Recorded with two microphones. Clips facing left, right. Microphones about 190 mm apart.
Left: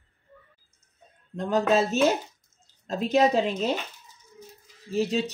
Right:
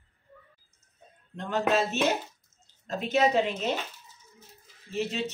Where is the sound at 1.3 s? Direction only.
35° left (ahead or behind).